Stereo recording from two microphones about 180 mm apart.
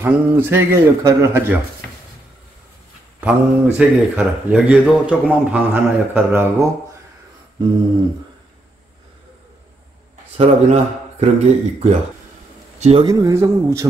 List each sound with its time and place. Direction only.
0.0 s a man's voice: 10° right (ahead or behind)
3.2 s a man's voice: 10° right (ahead or behind)
10.3 s speech: 35° right (ahead or behind)
13.0 s a man's voice: 20° right (ahead or behind)